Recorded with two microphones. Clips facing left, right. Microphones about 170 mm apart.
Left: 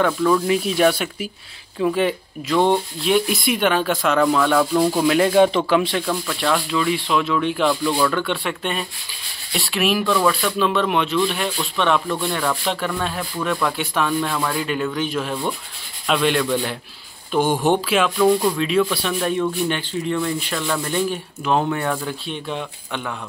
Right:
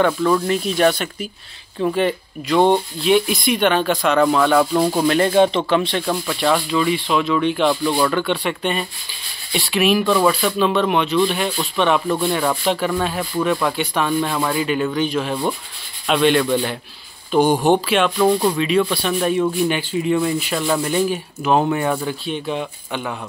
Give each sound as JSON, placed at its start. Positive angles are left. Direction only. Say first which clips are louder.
{"t": 0.0, "sound": "speech", "louder": "right 1 dB", "side_deg": 0}
{"t": 6.0, "sound": "speech", "louder": "right 3 dB", "side_deg": -5}
{"t": 7.6, "sound": "speech", "louder": "right 2 dB", "side_deg": -20}
{"t": 8.0, "sound": "speech", "louder": "right 2 dB", "side_deg": 0}